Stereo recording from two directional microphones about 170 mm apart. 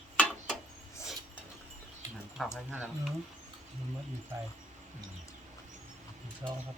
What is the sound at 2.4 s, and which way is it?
Speech, centre (ahead or behind).